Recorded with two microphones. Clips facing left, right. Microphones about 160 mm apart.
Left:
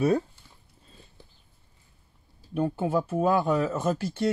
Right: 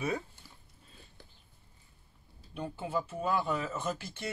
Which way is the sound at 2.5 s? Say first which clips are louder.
Left 9 dB; 50° left (ahead or behind).